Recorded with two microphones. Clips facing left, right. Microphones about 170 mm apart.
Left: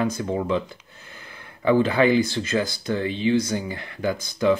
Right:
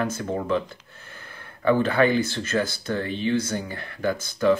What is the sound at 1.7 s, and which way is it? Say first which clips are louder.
Speech: left 2 dB; 15° left (ahead or behind).